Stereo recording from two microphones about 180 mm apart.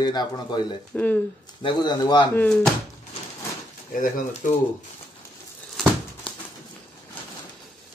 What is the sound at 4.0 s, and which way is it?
Speech, 45° left (ahead or behind).